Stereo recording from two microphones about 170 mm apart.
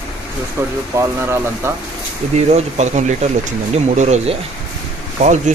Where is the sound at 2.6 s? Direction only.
40° right (ahead or behind).